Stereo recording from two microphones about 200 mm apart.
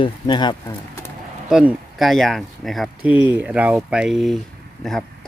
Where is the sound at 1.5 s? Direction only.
5° right (ahead or behind).